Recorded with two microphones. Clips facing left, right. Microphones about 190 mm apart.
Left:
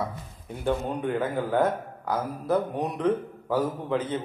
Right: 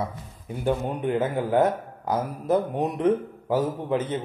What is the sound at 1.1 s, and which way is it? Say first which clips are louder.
A man's voice: right 3 dB; 20° right (ahead or behind).